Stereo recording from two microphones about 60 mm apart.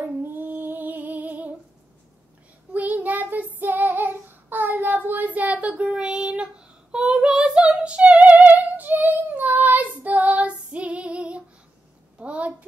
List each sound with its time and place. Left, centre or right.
0.0 s music: right
2.7 s child singing: right
12.2 s a sound: right